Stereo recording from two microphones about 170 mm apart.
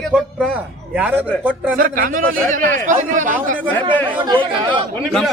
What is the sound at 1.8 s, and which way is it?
Speech, 55° right (ahead or behind).